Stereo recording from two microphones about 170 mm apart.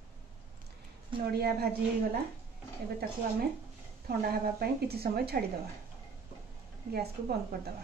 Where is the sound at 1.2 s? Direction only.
70° right (ahead or behind).